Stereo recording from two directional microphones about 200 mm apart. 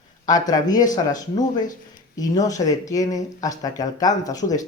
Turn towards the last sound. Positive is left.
turn(degrees=15)  # may be behind; listen again after turning